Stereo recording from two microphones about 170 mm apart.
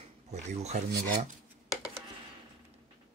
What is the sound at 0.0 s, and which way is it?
Speech, 40° right (ahead or behind).